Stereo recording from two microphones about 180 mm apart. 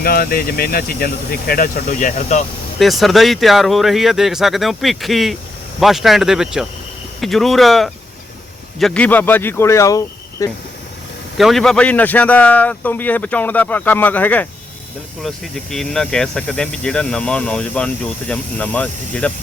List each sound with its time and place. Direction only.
0.0 s speech: 55° left (ahead or behind)
2.7 s speech: centre (ahead or behind); by 10.6 s 20° left (ahead or behind)
11.3 s speech: centre (ahead or behind)